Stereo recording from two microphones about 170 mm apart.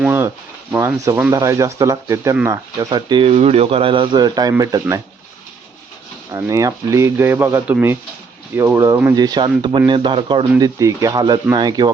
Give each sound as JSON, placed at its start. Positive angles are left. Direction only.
{"t": 0.0, "sound": "a sound", "side_deg": -10}
{"t": 0.7, "sound": "speech", "side_deg": -10}
{"t": 2.7, "sound": "speech", "side_deg": -25}
{"t": 6.3, "sound": "speech", "side_deg": -20}
{"t": 10.6, "sound": "speech", "side_deg": -20}